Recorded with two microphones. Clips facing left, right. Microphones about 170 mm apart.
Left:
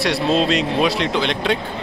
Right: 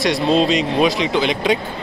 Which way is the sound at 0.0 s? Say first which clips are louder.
Right 2 dB; centre (ahead or behind).